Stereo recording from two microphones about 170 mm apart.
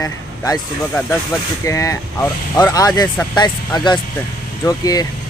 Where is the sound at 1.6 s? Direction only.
20° left (ahead or behind).